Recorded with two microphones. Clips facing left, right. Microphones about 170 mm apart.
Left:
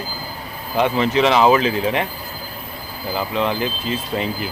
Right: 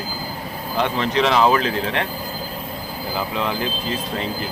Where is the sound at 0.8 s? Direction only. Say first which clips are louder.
Left 3 dB; 5° left (ahead or behind).